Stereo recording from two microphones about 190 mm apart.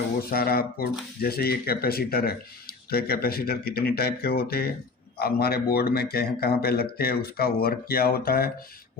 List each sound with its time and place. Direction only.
0.2 s speech: 55° left (ahead or behind)